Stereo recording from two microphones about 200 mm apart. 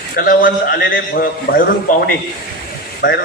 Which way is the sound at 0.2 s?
45° left (ahead or behind).